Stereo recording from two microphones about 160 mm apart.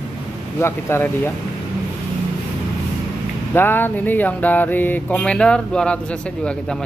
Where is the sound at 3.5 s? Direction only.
10° left (ahead or behind).